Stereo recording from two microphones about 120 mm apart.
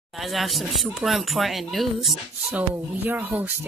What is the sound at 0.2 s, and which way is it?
Speech, centre (ahead or behind).